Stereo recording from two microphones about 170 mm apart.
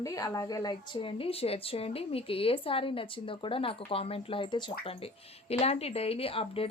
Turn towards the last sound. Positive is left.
turn(degrees=35)  # may be behind; listen again after turning